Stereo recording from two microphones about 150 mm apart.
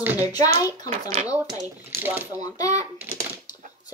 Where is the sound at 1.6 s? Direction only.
15° right (ahead or behind).